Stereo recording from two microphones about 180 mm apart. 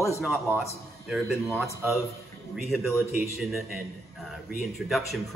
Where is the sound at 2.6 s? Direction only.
Centre (ahead or behind).